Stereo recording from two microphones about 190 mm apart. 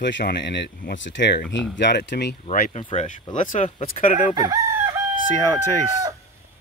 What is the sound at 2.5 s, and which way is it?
Speech, 50° left (ahead or behind).